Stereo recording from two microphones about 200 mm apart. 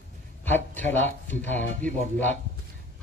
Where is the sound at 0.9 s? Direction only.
10° left (ahead or behind).